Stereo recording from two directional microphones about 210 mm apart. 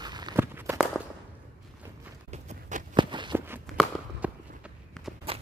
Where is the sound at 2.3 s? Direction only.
35° right (ahead or behind).